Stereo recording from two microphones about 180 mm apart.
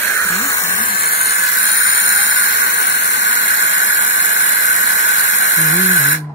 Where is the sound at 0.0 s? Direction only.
15° left (ahead or behind).